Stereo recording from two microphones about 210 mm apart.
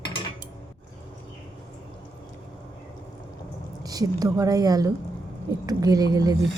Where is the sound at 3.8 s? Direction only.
15° right (ahead or behind).